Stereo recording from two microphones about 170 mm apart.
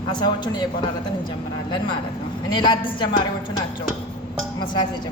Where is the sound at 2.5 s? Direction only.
30° left (ahead or behind).